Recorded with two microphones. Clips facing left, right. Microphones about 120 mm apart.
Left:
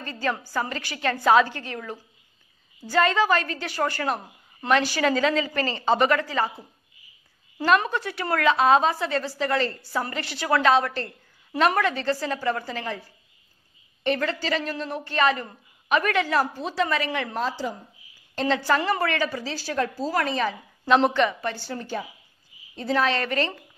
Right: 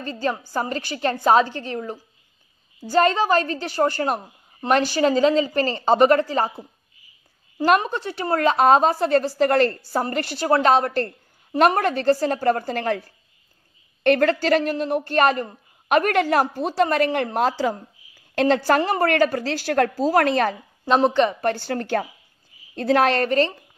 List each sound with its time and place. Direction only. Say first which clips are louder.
0.0 s a woman's voice: right 3 dB; 30° right (ahead or behind)
0.6 s a woman's voice: right 4 dB; 35° right (ahead or behind)
7.8 s a woman's voice: right 2 dB; 30° right (ahead or behind)
8.5 s a woman's voice: right 5 dB; 45° right (ahead or behind)
9.8 s a woman's voice: right 5 dB; 40° right (ahead or behind); by 13.0 s 55° right (ahead or behind)
14.0 s a woman's voice: right 8 dB; 60° right (ahead or behind); by 17.7 s 80° right
18.5 s a woman's voice: right 3 dB; 40° right (ahead or behind)
19.0 s a woman's voice: right 7 dB; 55° right (ahead or behind)
21.1 s a woman's voice: right 4 dB; 35° right (ahead or behind)
21.4 s a woman's voice: right 7 dB; 60° right (ahead or behind)
23.2 s a woman's voice: right 6 dB; 35° right (ahead or behind)